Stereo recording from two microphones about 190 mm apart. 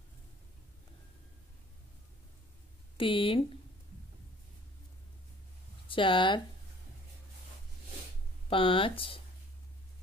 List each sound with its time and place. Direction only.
3.0 s speech: 30° left (ahead or behind)
5.9 s speech: 25° left (ahead or behind)
8.5 s speech: 30° left (ahead or behind)